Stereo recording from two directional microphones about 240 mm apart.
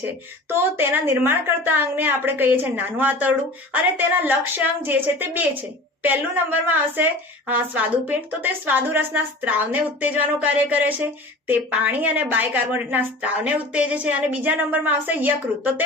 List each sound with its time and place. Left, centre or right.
0.0 s a woman's voice: centre